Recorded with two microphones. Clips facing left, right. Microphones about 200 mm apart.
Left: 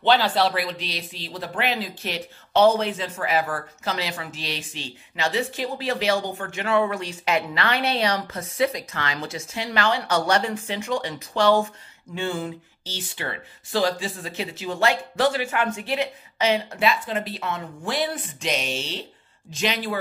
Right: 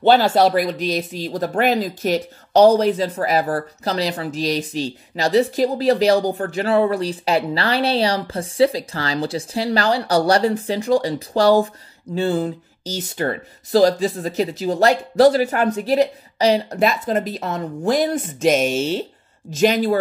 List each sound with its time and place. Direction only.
0.0 s speech: 45° right (ahead or behind)